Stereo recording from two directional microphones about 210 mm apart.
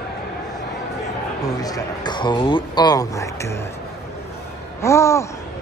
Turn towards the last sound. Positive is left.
turn(degrees=15)  # may be behind; listen again after turning